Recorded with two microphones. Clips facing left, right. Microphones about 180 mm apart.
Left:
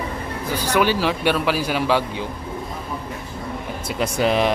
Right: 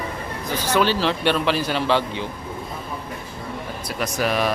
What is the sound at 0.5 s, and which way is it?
Speech, 10° left (ahead or behind).